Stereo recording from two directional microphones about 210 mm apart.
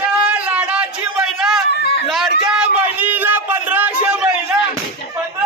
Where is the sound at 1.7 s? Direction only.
50° left (ahead or behind).